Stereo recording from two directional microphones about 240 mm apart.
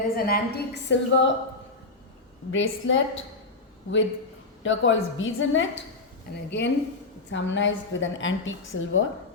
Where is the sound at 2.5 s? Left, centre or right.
Left.